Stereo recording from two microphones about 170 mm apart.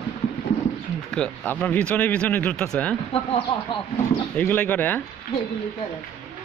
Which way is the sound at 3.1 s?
35° left (ahead or behind).